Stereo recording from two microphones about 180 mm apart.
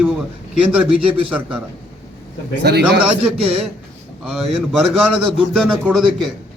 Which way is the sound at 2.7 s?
65° right (ahead or behind).